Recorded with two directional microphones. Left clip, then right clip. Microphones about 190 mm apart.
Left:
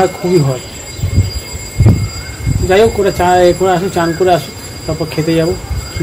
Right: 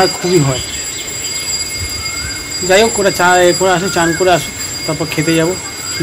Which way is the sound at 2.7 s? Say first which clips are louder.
Left 1 dB; 5° right (ahead or behind).